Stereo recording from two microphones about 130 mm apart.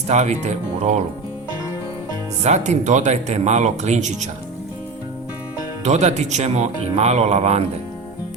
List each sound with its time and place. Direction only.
0.1 s speech: 60° right (ahead or behind)
2.4 s speech: 60° right (ahead or behind)
5.8 s speech: 60° right (ahead or behind)